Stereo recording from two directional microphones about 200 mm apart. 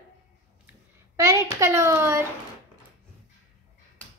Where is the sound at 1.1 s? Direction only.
15° right (ahead or behind).